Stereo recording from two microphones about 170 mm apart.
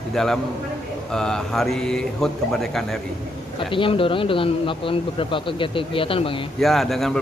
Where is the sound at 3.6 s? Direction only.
30° left (ahead or behind).